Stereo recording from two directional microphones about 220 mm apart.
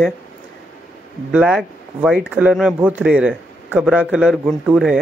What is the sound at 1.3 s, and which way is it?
Speech, 5° right (ahead or behind).